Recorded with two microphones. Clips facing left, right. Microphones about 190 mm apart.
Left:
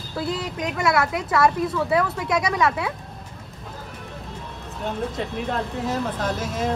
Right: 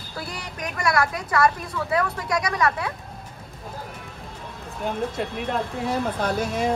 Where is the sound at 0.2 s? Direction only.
25° left (ahead or behind).